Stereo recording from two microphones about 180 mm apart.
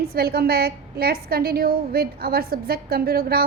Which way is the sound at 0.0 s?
60° right (ahead or behind).